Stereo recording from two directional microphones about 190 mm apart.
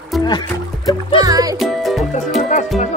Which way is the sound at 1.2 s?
20° right (ahead or behind).